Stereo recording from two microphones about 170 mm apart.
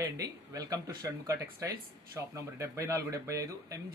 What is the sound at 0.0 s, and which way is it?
Speech, 20° right (ahead or behind).